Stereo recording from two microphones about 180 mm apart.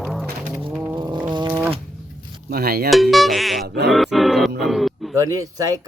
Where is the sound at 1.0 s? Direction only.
25° right (ahead or behind).